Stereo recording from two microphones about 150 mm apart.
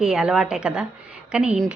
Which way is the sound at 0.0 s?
5° right (ahead or behind).